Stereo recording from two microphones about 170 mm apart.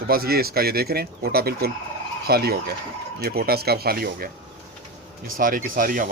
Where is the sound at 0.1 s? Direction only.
65° right (ahead or behind).